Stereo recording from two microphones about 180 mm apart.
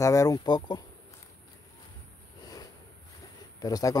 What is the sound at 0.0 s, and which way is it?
Speech, 20° left (ahead or behind).